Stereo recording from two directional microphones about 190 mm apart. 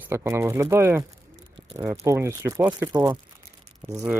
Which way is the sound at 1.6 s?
25° right (ahead or behind).